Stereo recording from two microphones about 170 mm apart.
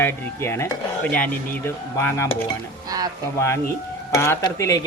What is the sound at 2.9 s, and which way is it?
Speech, 20° right (ahead or behind).